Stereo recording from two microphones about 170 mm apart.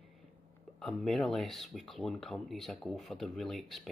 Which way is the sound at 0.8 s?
Centre (ahead or behind).